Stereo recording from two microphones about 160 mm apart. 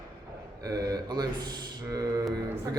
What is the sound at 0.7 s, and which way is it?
Speech, 20° right (ahead or behind).